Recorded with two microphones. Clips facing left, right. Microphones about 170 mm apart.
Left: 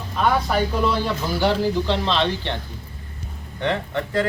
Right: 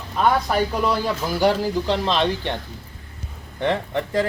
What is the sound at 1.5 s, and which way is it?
Speech, 10° right (ahead or behind).